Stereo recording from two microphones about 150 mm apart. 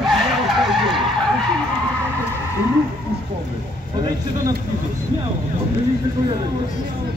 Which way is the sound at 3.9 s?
25° right (ahead or behind).